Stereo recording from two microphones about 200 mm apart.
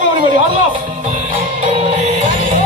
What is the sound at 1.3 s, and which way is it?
Speech, 40° right (ahead or behind).